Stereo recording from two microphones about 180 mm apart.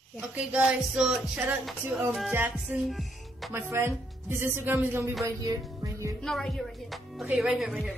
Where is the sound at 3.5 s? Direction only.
15° right (ahead or behind).